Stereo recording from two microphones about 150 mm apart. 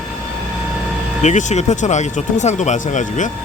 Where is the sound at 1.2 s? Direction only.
55° left (ahead or behind).